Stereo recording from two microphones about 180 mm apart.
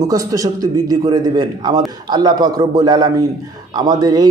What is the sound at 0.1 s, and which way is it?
A man's voice, 20° right (ahead or behind).